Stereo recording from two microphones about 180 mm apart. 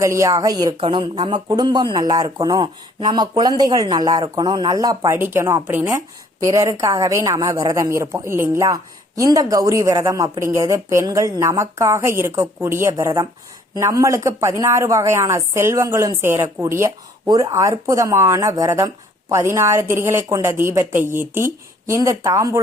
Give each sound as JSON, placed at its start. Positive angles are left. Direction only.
{"t": 0.0, "sound": "a woman's voice", "side_deg": -15}